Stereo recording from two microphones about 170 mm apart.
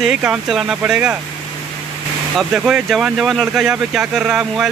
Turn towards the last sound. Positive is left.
turn(degrees=-5)  # may be behind; listen again after turning